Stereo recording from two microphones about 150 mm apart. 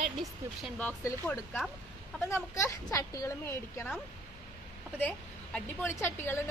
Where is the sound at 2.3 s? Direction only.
20° left (ahead or behind).